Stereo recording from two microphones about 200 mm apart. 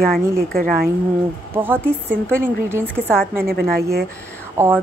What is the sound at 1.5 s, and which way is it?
Speech, 10° right (ahead or behind).